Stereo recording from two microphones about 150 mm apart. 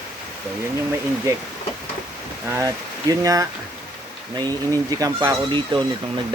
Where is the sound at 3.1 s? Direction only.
25° right (ahead or behind).